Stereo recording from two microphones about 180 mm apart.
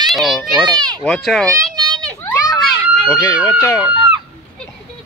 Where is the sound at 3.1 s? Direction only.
20° left (ahead or behind).